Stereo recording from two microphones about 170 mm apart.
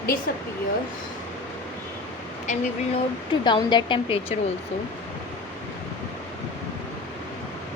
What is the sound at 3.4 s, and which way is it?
Speech, 25° left (ahead or behind).